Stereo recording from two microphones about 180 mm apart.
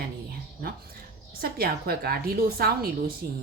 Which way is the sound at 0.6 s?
55° right (ahead or behind).